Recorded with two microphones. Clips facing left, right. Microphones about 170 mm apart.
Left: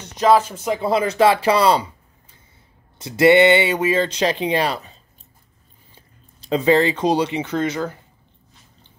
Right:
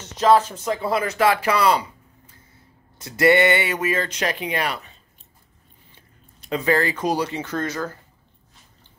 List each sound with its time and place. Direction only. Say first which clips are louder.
0.2 s speech: left 1 dB; 10° left (ahead or behind); by 1.9 s 30° left (ahead or behind)
3.0 s speech: left 4 dB; 25° left (ahead or behind)
6.5 s speech: left 5 dB; 25° left (ahead or behind)